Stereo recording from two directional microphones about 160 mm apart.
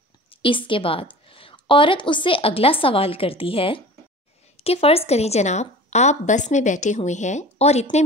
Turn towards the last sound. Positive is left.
turn(degrees=45)  # may be behind; listen again after turning